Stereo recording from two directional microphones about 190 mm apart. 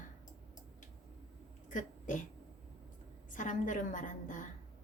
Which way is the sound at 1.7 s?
45° left (ahead or behind).